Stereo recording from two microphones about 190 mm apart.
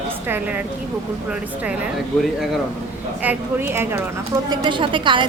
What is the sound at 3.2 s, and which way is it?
A woman's voice, 10° right (ahead or behind).